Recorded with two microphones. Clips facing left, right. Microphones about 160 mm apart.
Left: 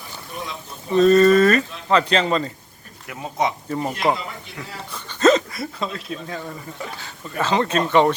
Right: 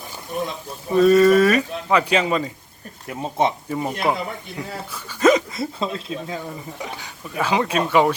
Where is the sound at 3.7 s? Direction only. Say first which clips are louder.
Left 1 dB; 5° right (ahead or behind).